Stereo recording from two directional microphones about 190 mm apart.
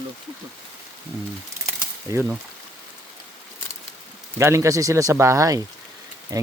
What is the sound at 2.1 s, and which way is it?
Speech, 15° right (ahead or behind).